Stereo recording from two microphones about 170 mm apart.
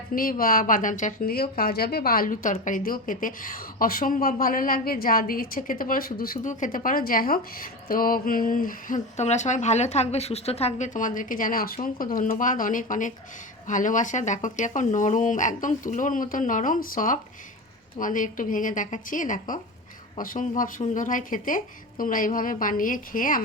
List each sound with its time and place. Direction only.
0.1 s a woman's voice: 55° left (ahead or behind)